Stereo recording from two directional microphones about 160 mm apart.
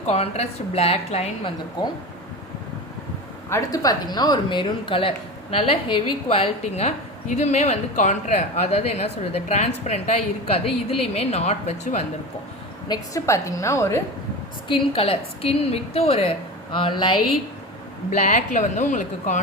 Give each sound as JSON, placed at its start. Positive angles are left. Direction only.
{"t": 0.0, "sound": "speech", "side_deg": 40}
{"t": 1.8, "sound": "a woman's voice", "side_deg": 25}
{"t": 3.5, "sound": "a woman's voice", "side_deg": 25}
{"t": 12.9, "sound": "a woman's voice", "side_deg": 20}
{"t": 14.7, "sound": "speech", "side_deg": 35}
{"t": 18.1, "sound": "a woman's voice", "side_deg": 45}